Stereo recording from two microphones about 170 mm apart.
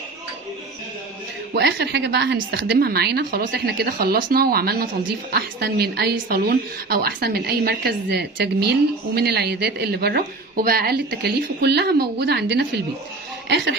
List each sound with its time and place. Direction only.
1.5 s a woman's voice: 80° right